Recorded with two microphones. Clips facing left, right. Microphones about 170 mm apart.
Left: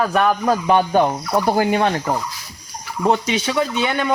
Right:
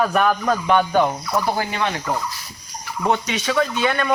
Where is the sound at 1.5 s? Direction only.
40° left (ahead or behind).